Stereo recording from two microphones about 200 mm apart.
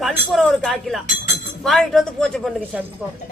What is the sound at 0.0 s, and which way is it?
A woman's voice, centre (ahead or behind).